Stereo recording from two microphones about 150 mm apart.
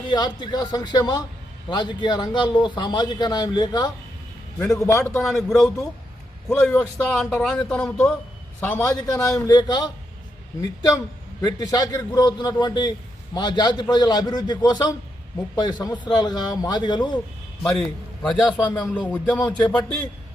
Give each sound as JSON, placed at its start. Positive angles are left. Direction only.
{"t": 0.1, "sound": "a man's voice", "side_deg": 30}
{"t": 5.4, "sound": "speech", "side_deg": 0}
{"t": 5.6, "sound": "a man's voice", "side_deg": 20}
{"t": 9.0, "sound": "a man's voice", "side_deg": 25}
{"t": 17.7, "sound": "a man's voice", "side_deg": 5}